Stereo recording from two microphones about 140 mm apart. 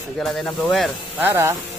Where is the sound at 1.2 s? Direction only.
20° right (ahead or behind).